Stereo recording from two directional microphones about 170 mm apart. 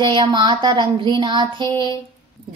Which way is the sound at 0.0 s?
30° right (ahead or behind).